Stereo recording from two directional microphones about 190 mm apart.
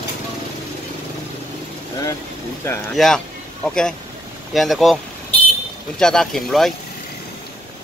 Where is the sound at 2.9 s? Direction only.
Centre (ahead or behind).